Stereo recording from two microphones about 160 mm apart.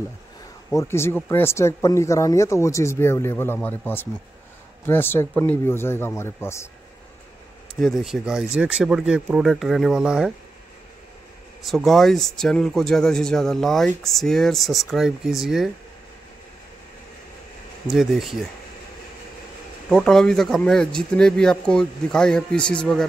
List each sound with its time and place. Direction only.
0.7 s speech: 15° left (ahead or behind)
7.8 s speech: centre (ahead or behind)
11.6 s speech: centre (ahead or behind)
17.8 s speech: centre (ahead or behind)
19.9 s speech: 5° left (ahead or behind)